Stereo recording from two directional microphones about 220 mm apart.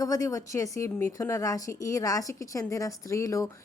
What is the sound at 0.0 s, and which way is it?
A woman's voice, 15° left (ahead or behind).